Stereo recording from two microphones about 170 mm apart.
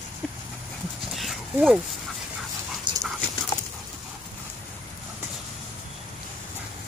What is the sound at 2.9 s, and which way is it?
Dog, 25° right (ahead or behind).